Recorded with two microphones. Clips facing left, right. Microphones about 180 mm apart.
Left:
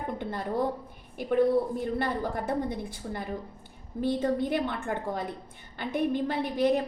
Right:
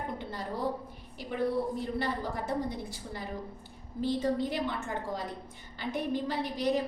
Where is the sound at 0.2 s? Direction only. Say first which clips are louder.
Left 5 dB; 55° left (ahead or behind).